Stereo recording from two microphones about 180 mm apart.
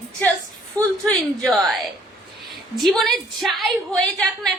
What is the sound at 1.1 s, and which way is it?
Speech, centre (ahead or behind).